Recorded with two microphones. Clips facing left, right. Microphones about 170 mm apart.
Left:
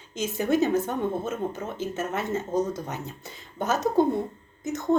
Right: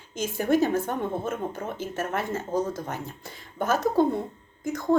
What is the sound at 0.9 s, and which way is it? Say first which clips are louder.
Speech: left 1 dB; 55° right (ahead or behind).